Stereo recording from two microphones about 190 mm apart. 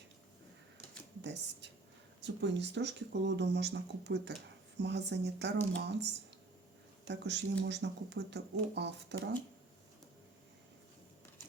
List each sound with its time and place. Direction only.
1.2 s speech: 65° right (ahead or behind)